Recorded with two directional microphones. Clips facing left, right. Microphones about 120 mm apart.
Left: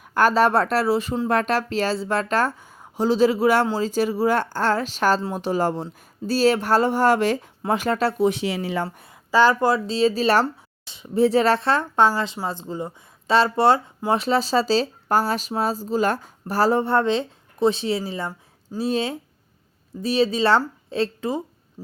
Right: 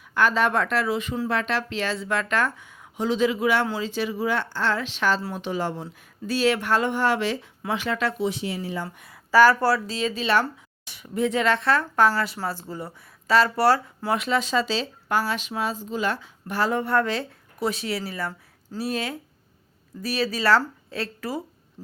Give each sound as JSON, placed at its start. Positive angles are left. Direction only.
{"t": 0.0, "sound": "speech", "side_deg": 45}
{"t": 1.3, "sound": "speech", "side_deg": 45}
{"t": 8.3, "sound": "speech", "side_deg": 80}
{"t": 9.0, "sound": "speech", "side_deg": 25}
{"t": 10.4, "sound": "speech", "side_deg": 20}
{"t": 11.2, "sound": "speech", "side_deg": 35}